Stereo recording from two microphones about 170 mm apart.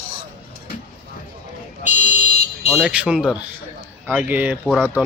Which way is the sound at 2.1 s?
40° left (ahead or behind).